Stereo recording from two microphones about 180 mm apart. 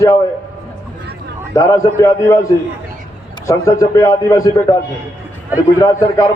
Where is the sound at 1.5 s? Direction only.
15° left (ahead or behind).